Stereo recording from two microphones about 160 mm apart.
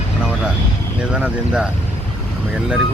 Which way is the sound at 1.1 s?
5° right (ahead or behind).